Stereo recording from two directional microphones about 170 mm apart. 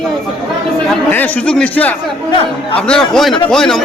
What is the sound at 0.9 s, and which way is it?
A man's voice, 10° left (ahead or behind).